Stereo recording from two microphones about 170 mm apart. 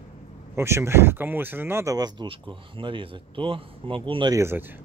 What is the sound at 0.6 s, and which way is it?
Speech, 15° right (ahead or behind).